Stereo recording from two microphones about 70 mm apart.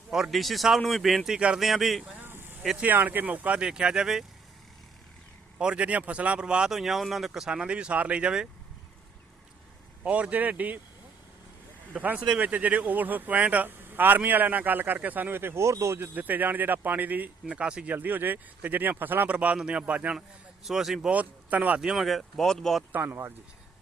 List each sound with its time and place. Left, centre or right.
0.1 s speech: centre
2.2 s a sound: right
2.7 s speech: right; by 4.3 s centre
5.5 s speech: centre
10.0 s speech: centre
11.9 s speech: centre; by 16.0 s right
16.0 s speech: right
17.9 s speech: right
20.7 s speech: centre
21.1 s speech: right
21.9 s speech: centre
22.9 s speech: right